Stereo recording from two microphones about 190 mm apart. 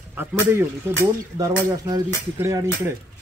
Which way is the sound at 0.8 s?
15° right (ahead or behind).